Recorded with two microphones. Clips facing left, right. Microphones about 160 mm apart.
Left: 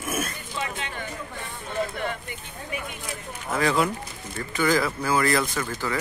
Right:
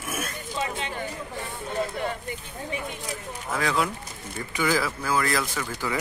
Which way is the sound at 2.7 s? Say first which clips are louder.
Even; 30° right (ahead or behind).